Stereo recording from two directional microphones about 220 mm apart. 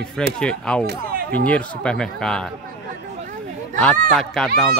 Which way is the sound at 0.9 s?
40° right (ahead or behind).